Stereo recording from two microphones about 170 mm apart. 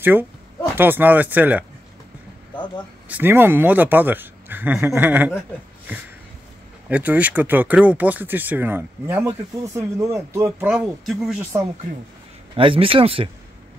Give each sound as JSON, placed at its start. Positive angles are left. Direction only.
{"t": 0.0, "sound": "speech", "side_deg": -10}
{"t": 3.1, "sound": "speech", "side_deg": -10}
{"t": 6.9, "sound": "speech", "side_deg": -10}
{"t": 10.7, "sound": "speech", "side_deg": -5}
{"t": 12.5, "sound": "speech", "side_deg": -30}